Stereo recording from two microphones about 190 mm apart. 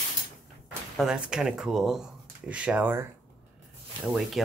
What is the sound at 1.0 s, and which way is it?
Speech, 5° right (ahead or behind).